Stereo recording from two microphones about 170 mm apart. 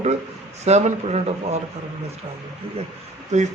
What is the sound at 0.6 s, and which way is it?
Speech, 40° right (ahead or behind).